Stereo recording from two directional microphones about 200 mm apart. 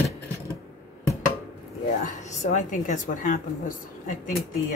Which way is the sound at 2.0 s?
35° left (ahead or behind).